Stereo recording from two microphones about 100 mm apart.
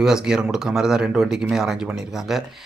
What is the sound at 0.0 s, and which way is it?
A man's voice, 5° right (ahead or behind).